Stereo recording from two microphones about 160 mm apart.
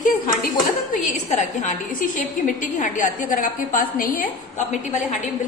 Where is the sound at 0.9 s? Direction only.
50° left (ahead or behind).